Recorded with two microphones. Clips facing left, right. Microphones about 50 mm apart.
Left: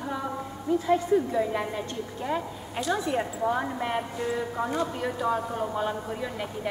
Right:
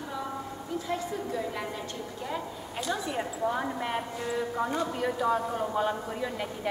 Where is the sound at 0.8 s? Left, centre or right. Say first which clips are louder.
Left 10 dB; left.